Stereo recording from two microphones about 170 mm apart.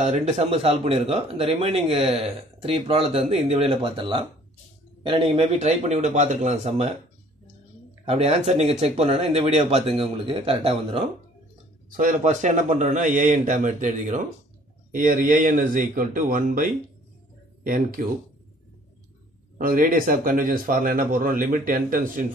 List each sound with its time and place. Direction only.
0.0 s speech: 40° right (ahead or behind)
8.0 s speech: 35° right (ahead or behind)
12.0 s speech: 50° right (ahead or behind)
19.6 s speech: 55° right (ahead or behind)